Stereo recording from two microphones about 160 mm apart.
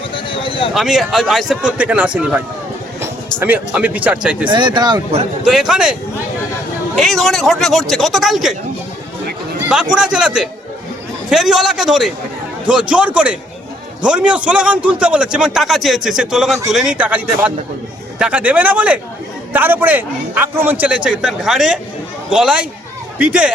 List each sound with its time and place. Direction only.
0.1 s a sound: 35° left (ahead or behind)
0.7 s a man's voice: centre (ahead or behind)
3.4 s a man's voice: 10° right (ahead or behind)
4.4 s speech: 30° right (ahead or behind)
5.5 s a man's voice: 5° right (ahead or behind)
9.9 s a man's voice: 5° right (ahead or behind)